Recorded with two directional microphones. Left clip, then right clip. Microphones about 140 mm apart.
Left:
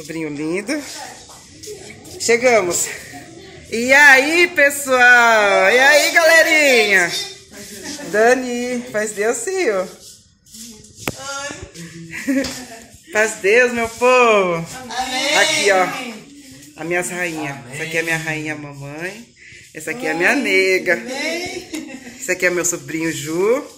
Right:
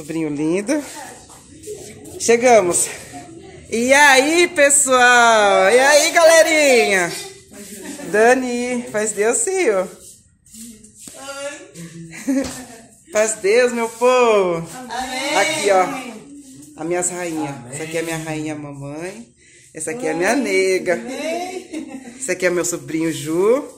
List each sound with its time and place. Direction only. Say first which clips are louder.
0.1 s speech: right 3 dB; 30° right (ahead or behind)
2.1 s speech: right 2 dB; 25° right (ahead or behind)
8.1 s speech: even; 20° right (ahead or behind)
12.1 s a sound: left 1 dB; 5° right (ahead or behind)
13.1 s a man's voice: left 1 dB; 5° right (ahead or behind)
19.7 s speech: even; 15° right (ahead or behind)
22.2 s speech: left 1 dB; 20° right (ahead or behind)